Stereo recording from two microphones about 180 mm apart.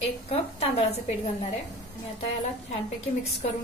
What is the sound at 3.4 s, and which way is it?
Speech, 35° left (ahead or behind).